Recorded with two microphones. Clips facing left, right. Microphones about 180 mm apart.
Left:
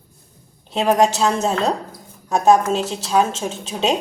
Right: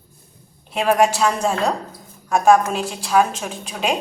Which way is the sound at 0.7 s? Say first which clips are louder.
Left 1 dB; 25° left (ahead or behind).